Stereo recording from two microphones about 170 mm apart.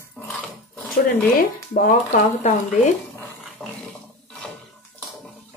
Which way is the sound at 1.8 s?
45° left (ahead or behind).